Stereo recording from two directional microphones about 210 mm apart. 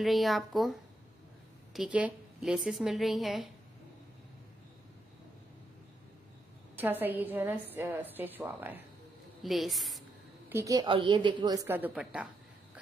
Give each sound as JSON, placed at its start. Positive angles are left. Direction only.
{"t": 0.0, "sound": "a woman's voice", "side_deg": 0}
{"t": 6.8, "sound": "a woman's voice", "side_deg": -10}
{"t": 10.5, "sound": "a woman's voice", "side_deg": -15}